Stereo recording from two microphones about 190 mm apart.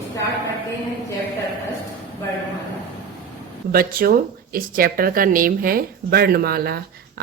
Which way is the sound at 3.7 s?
50° right (ahead or behind).